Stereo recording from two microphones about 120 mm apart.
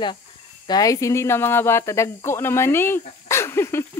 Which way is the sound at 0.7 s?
30° left (ahead or behind).